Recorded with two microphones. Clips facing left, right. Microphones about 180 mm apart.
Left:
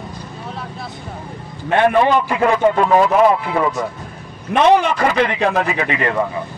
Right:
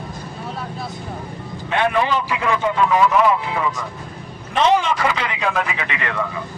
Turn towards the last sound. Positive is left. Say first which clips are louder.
# left 7 dB
turn(degrees=40)  # may be behind; listen again after turning